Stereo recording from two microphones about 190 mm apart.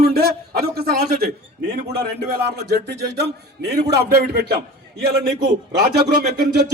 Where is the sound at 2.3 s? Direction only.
60° right (ahead or behind).